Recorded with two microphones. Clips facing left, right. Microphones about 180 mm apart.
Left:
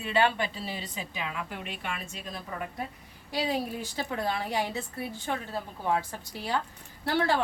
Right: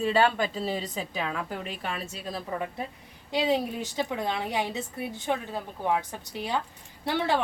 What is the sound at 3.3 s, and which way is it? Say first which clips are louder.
A woman's voice: right 4 dB; 20° right (ahead or behind).